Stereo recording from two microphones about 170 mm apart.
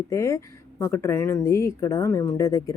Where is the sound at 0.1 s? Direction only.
15° left (ahead or behind).